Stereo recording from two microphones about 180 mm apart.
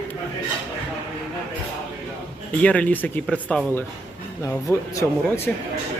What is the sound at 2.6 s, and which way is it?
Speech, 5° left (ahead or behind).